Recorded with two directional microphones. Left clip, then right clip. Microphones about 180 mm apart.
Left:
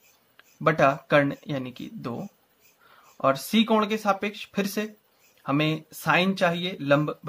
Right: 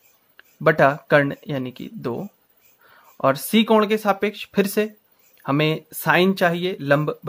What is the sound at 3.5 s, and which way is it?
Speech, 40° right (ahead or behind).